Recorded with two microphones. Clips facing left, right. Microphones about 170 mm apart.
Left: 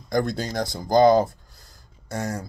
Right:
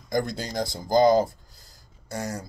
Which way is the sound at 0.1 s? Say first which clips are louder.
Left 3 dB; 55° left (ahead or behind).